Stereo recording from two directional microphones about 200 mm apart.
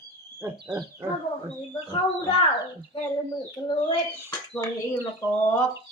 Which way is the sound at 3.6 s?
15° left (ahead or behind).